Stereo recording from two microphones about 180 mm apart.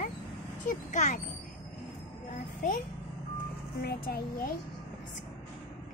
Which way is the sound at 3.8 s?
55° left (ahead or behind).